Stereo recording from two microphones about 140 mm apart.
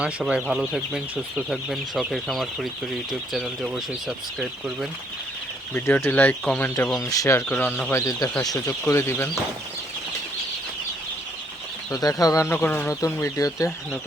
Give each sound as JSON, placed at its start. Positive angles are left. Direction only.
{"t": 0.0, "sound": "speech", "side_deg": -5}
{"t": 5.7, "sound": "speech", "side_deg": 15}
{"t": 11.9, "sound": "speech", "side_deg": 25}